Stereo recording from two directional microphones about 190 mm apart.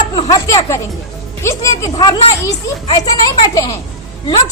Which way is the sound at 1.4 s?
15° left (ahead or behind).